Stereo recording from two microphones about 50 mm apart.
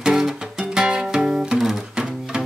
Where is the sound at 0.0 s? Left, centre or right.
Centre.